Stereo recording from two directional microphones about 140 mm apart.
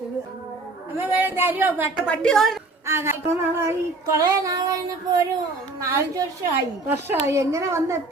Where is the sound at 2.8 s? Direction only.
20° right (ahead or behind).